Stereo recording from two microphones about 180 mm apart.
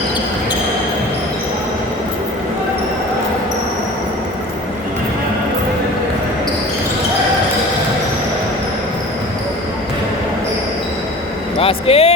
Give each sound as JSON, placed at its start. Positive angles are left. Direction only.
{"t": 11.6, "sound": "vehicle", "side_deg": 30}